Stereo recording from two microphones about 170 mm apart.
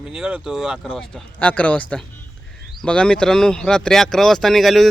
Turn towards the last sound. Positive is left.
turn(degrees=0)  # may be behind; listen again after turning